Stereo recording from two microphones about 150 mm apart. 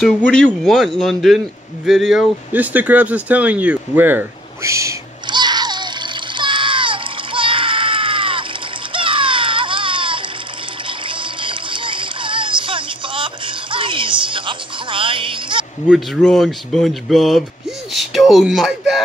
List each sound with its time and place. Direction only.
0.0 s speech: 5° left (ahead or behind); by 4.9 s 20° right (ahead or behind)
5.2 s baby cry: 30° right (ahead or behind)
6.3 s water: 35° right (ahead or behind)
8.9 s a sound: 35° right (ahead or behind)
10.9 s music: 35° right (ahead or behind)
15.9 s speech: centre (ahead or behind)